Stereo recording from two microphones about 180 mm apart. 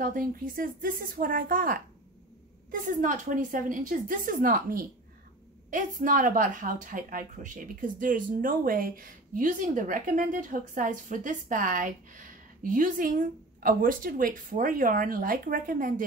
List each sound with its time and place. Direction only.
0.0 s a woman's voice: 50° right (ahead or behind)